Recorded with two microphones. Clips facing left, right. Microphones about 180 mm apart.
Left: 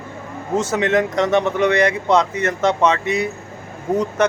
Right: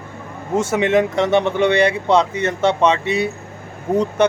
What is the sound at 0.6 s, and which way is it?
Speech, 25° right (ahead or behind).